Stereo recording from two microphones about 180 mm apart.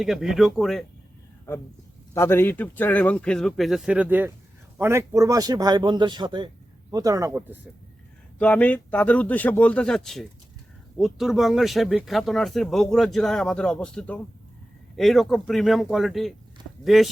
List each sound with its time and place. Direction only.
0.0 s speech: centre (ahead or behind)
1.5 s speech: 15° left (ahead or behind); by 7.7 s 10° right (ahead or behind)
8.4 s speech: 10° left (ahead or behind)